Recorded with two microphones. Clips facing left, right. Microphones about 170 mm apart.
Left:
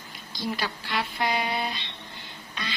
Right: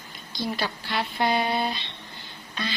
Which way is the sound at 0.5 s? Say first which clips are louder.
Right 2 dB; 30° right (ahead or behind).